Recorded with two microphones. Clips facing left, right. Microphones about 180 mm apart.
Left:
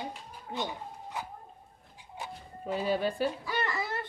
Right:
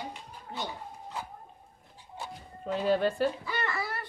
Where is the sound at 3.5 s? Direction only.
15° left (ahead or behind).